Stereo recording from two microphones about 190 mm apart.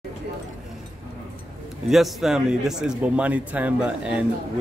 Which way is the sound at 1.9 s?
Centre (ahead or behind).